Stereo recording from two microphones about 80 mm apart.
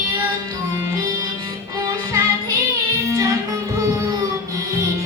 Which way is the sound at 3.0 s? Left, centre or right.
Right.